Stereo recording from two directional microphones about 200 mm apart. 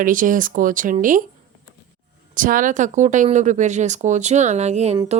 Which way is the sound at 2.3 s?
40° right (ahead or behind).